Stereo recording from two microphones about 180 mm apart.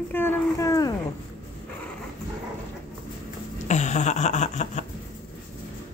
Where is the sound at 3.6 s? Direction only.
40° left (ahead or behind).